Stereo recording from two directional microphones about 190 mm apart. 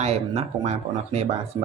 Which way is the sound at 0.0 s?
35° right (ahead or behind).